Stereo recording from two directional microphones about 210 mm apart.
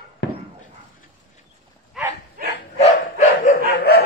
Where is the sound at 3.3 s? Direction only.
45° left (ahead or behind).